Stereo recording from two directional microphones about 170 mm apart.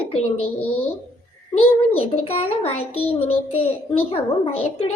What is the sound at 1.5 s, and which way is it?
A child's voice, 35° left (ahead or behind).